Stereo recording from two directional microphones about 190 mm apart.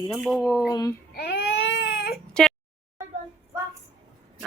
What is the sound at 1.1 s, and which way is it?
Baby cry, 60° left (ahead or behind).